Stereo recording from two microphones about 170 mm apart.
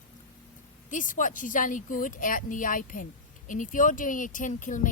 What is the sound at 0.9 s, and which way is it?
Speech, 50° left (ahead or behind).